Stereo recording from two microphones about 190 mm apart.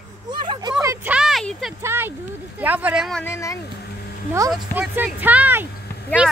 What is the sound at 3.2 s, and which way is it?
Speech, 15° left (ahead or behind).